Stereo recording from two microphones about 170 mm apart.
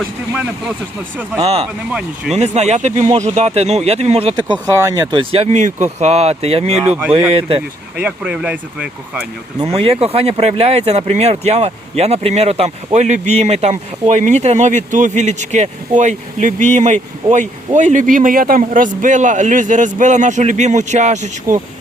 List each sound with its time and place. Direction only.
1.4 s speech: 35° right (ahead or behind)
1.9 s speech: 5° right (ahead or behind)
2.3 s speech: 40° right (ahead or behind)
6.8 s speech: 10° right (ahead or behind)
7.1 s speech: 35° right (ahead or behind)
7.9 s speech: 10° right (ahead or behind)
9.6 s speech: 35° right (ahead or behind)
21.5 s speech: 20° right (ahead or behind)